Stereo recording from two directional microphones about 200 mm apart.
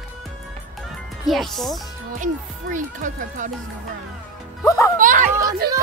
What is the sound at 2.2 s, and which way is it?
Speech, 40° right (ahead or behind).